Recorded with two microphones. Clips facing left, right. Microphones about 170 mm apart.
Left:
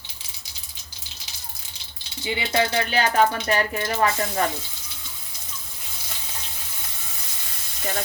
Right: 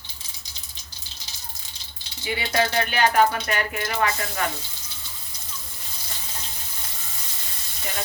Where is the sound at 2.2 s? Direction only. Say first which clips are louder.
Left 1 dB; 25° left (ahead or behind).